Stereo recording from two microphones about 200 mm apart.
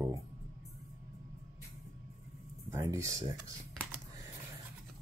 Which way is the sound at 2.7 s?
15° right (ahead or behind).